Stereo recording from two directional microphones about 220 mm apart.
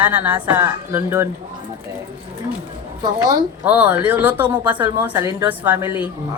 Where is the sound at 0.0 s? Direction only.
10° right (ahead or behind).